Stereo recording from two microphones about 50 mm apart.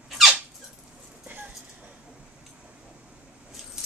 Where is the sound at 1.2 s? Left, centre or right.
Right.